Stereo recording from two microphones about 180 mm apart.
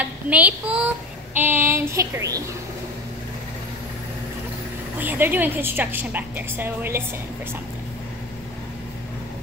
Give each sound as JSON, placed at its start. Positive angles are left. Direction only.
{"t": 0.0, "sound": "a child's voice", "side_deg": -10}
{"t": 1.3, "sound": "child singing", "side_deg": -10}
{"t": 4.9, "sound": "a woman's voice", "side_deg": -10}